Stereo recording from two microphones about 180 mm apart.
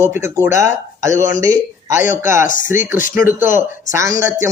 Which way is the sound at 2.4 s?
45° left (ahead or behind).